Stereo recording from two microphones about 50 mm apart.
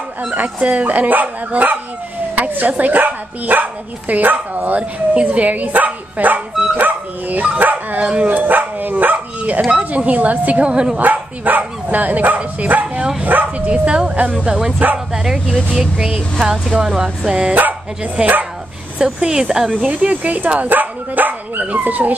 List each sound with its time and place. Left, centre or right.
0.6 s speech: right
10.7 s speech: centre
11.0 s a woman's voice: right; by 14.7 s centre
15.2 s a woman's voice: centre
17.6 s speech: right
19.0 s a woman's voice: centre
19.8 s speech: right